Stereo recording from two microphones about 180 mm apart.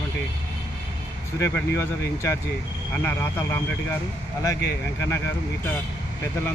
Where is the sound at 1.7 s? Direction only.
15° left (ahead or behind).